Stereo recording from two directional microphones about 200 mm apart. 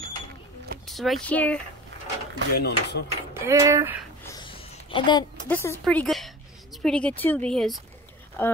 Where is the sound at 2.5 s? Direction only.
55° left (ahead or behind).